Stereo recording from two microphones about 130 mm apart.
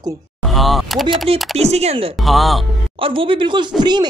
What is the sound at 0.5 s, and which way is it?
Speech, centre (ahead or behind).